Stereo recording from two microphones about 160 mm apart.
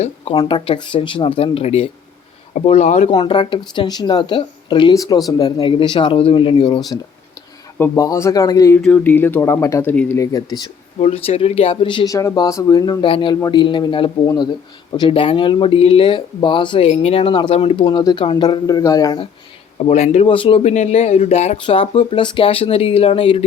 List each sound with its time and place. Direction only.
0.3 s speech: 30° left (ahead or behind); by 3.1 s 45° left (ahead or behind)
3.1 s speech: 30° left (ahead or behind)
7.8 s speech: 20° left (ahead or behind)
8.8 s speech: 10° left (ahead or behind)
10.2 s speech: 25° left (ahead or behind)
11.0 s speech: 40° left (ahead or behind)
12.1 s speech: 20° left (ahead or behind)
19.8 s speech: 45° left (ahead or behind)
20.2 s speech: 30° left (ahead or behind)
20.7 s speech: 45° left (ahead or behind)